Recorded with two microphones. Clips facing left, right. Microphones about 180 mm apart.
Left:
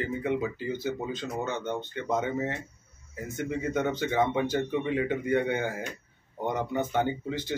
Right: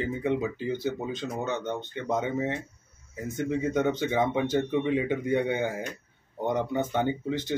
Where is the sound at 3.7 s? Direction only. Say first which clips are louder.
Even; 20° right (ahead or behind).